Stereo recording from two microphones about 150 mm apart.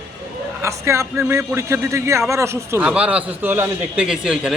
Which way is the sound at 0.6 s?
20° right (ahead or behind).